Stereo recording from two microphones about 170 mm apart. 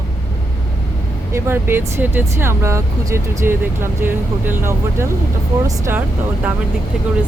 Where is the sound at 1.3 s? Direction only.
15° right (ahead or behind).